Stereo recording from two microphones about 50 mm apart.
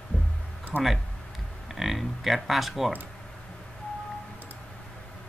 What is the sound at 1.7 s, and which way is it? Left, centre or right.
Speech, centre.